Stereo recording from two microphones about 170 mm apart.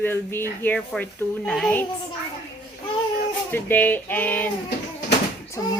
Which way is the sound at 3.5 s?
10° left (ahead or behind).